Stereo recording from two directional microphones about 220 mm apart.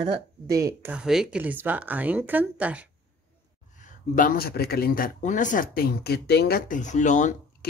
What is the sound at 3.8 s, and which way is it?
Speech, 35° left (ahead or behind).